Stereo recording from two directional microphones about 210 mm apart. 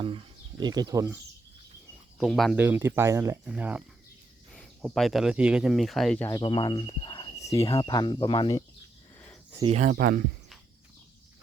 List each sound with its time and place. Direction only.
0.0 s speech: 25° right (ahead or behind)
2.1 s speech: centre (ahead or behind)
2.6 s speech: 10° right (ahead or behind); by 6.4 s 10° left (ahead or behind)
6.4 s speech: 20° left (ahead or behind)
9.7 s speech: 40° right (ahead or behind)